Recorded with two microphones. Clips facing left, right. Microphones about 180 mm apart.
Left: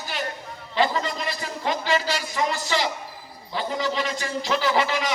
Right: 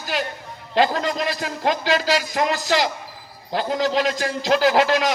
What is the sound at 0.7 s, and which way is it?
A man's voice, 90° right.